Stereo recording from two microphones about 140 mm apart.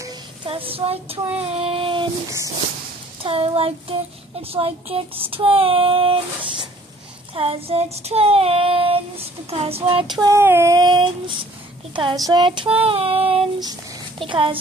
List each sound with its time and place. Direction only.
0.5 s child singing: 40° right (ahead or behind)
2.2 s child singing: 25° right (ahead or behind)
3.2 s child singing: 40° right (ahead or behind)
10.2 s child singing: 20° right (ahead or behind); by 14.6 s 40° right (ahead or behind)